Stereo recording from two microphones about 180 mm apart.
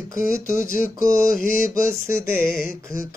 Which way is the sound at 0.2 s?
50° left (ahead or behind).